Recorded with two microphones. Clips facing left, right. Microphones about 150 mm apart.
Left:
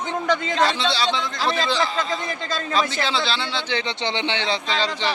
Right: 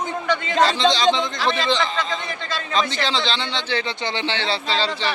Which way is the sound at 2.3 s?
45° left (ahead or behind).